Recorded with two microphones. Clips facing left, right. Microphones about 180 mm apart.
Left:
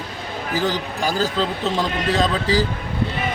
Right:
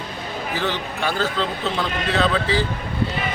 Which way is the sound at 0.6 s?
40° left (ahead or behind).